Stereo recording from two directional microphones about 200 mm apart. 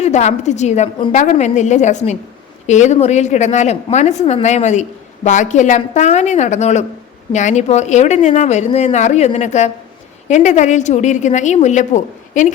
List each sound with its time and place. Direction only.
0.0 s a woman's voice: 35° left (ahead or behind)